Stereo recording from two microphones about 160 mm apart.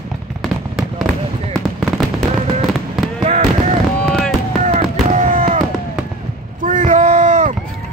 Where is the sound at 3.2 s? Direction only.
45° right (ahead or behind).